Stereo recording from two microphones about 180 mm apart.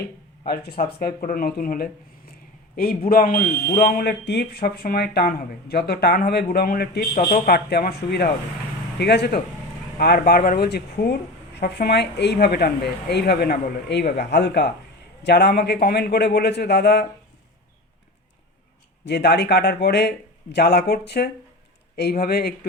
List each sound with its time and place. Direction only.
0.4 s speech: 65° left (ahead or behind)
19.0 s speech: 70° left (ahead or behind)